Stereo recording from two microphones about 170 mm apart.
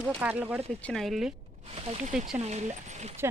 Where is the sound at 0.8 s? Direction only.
Centre (ahead or behind).